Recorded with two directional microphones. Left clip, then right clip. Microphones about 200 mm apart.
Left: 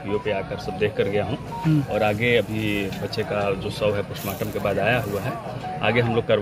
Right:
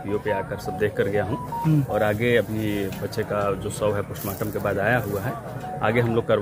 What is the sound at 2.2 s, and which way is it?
Speech, 65° right (ahead or behind).